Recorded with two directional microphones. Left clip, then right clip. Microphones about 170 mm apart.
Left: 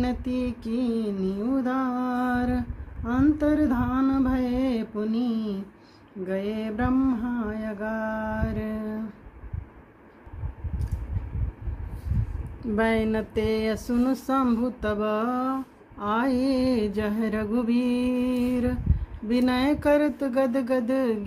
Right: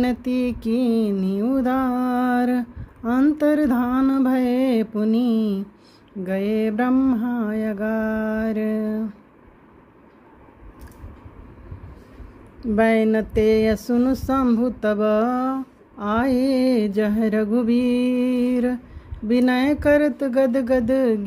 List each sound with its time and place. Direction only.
0.0 s mantra: 50° right (ahead or behind)
12.7 s speech: 30° right (ahead or behind)